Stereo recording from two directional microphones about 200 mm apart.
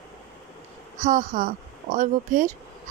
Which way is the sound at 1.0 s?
40° right (ahead or behind).